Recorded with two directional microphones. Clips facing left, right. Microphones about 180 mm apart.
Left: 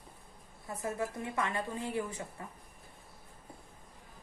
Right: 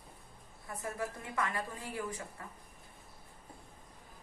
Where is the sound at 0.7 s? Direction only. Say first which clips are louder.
Left 3 dB; 25° left (ahead or behind).